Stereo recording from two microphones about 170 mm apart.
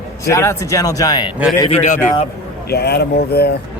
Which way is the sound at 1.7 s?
45° left (ahead or behind).